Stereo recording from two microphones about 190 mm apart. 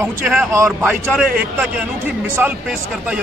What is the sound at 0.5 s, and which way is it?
Speech, 15° right (ahead or behind).